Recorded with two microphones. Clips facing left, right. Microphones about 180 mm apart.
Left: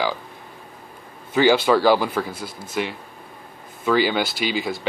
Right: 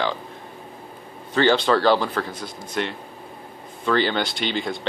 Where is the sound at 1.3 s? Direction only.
10° left (ahead or behind).